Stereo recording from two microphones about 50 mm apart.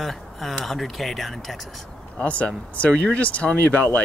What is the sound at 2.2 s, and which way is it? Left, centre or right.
Speech, left.